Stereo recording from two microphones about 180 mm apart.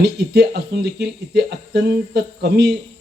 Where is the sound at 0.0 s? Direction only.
65° right (ahead or behind).